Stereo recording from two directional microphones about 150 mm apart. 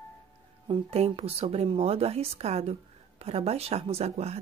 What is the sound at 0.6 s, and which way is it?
Speech, 35° right (ahead or behind).